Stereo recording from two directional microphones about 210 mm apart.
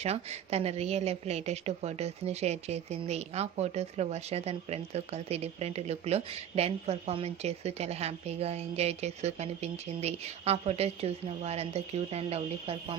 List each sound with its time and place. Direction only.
0.0 s a woman's voice: 30° right (ahead or behind)